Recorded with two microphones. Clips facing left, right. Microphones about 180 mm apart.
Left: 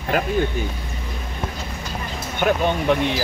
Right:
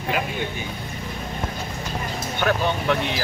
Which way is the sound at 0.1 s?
45° left (ahead or behind).